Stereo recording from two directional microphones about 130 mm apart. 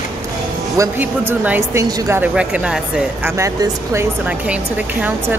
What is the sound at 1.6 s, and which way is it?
Speech, 25° right (ahead or behind).